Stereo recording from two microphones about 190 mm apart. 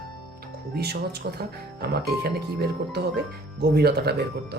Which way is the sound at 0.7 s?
55° right (ahead or behind).